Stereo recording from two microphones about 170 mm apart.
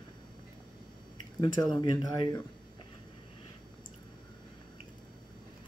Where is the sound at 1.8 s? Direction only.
25° left (ahead or behind).